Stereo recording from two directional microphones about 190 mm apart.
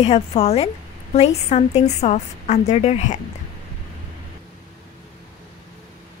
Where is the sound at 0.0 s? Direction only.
35° left (ahead or behind).